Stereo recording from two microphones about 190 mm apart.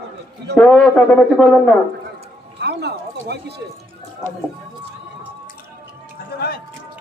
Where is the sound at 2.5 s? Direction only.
60° right (ahead or behind).